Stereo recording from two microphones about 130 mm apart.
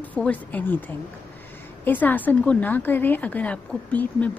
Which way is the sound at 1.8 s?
15° left (ahead or behind).